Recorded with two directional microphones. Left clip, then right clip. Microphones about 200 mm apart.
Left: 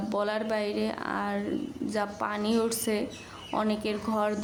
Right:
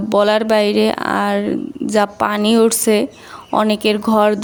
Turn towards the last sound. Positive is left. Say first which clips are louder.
# right 15 dB
turn(degrees=-45)  # may be behind; listen again after turning